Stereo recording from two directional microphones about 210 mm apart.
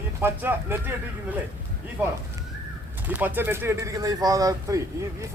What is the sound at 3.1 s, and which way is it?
Speech, 10° right (ahead or behind).